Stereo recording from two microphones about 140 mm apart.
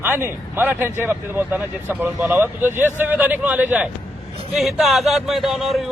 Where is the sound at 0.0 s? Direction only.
15° right (ahead or behind).